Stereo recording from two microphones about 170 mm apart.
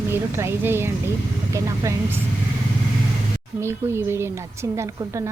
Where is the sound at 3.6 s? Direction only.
15° right (ahead or behind).